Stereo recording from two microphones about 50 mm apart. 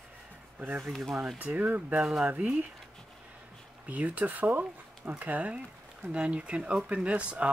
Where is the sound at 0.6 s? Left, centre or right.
Right.